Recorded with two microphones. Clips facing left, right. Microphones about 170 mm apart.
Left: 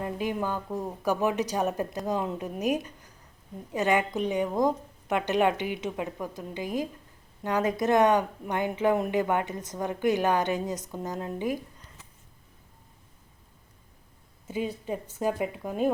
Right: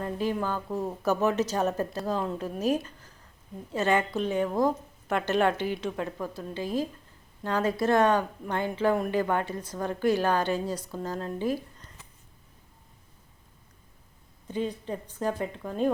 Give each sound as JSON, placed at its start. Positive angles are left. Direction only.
{"t": 0.0, "sound": "speech", "side_deg": 15}
{"t": 14.4, "sound": "speech", "side_deg": 10}